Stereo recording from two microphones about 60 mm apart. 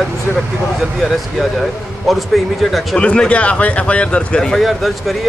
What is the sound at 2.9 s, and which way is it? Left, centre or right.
Speech, centre.